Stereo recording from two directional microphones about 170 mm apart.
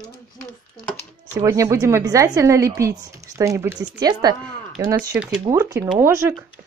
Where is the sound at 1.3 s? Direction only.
20° right (ahead or behind).